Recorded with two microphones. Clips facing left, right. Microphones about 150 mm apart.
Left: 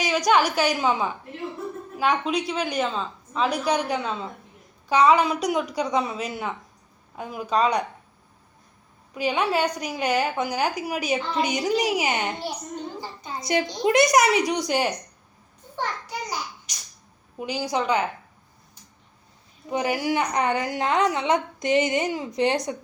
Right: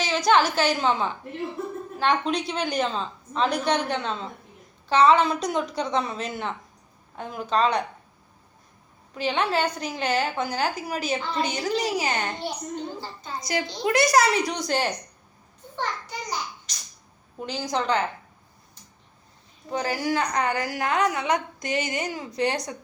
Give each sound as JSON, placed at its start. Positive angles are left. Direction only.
{"t": 0.0, "sound": "a woman's voice", "side_deg": 15}
{"t": 9.1, "sound": "a woman's voice", "side_deg": 10}
{"t": 16.7, "sound": "a sound", "side_deg": 15}
{"t": 17.3, "sound": "a woman's voice", "side_deg": 10}
{"t": 19.6, "sound": "a woman's voice", "side_deg": 15}